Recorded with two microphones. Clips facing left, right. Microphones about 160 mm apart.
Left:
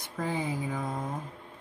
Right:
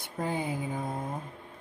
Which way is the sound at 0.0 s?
60° right (ahead or behind).